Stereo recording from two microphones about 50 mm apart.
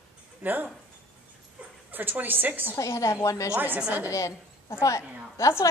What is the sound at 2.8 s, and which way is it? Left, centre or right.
Speech, left.